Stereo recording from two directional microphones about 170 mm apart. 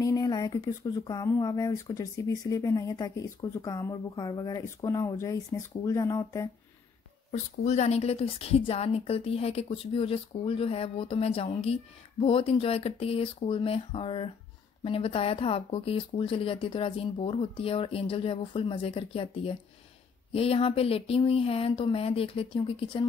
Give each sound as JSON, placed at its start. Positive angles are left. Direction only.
{"t": 0.0, "sound": "a sound", "side_deg": 20}
{"t": 1.0, "sound": "speech", "side_deg": 20}
{"t": 7.2, "sound": "speech", "side_deg": 40}